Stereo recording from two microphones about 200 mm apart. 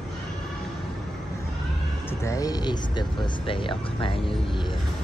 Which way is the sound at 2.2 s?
15° left (ahead or behind).